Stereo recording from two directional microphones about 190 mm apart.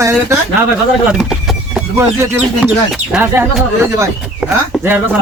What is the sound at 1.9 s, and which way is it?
Speech, 15° right (ahead or behind).